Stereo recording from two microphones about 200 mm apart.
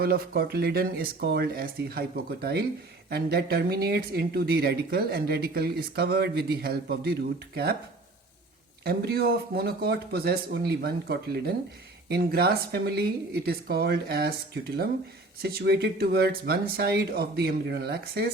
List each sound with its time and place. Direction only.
0.0 s speech: 50° right (ahead or behind)
8.8 s speech: 50° right (ahead or behind)